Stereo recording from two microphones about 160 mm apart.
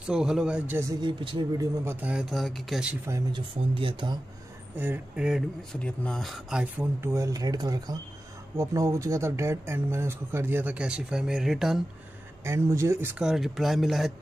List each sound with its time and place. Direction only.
0.0 s speech: 5° right (ahead or behind)
1.0 s speech: 30° right (ahead or behind)
1.9 s speech: 10° right (ahead or behind)
3.1 s speech: 30° right (ahead or behind)
4.7 s speech: 10° right (ahead or behind)
12.4 s speech: 20° right (ahead or behind); by 14.1 s centre (ahead or behind)